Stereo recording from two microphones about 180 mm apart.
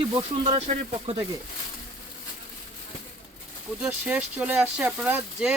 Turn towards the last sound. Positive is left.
turn(degrees=-5)  # may be behind; listen again after turning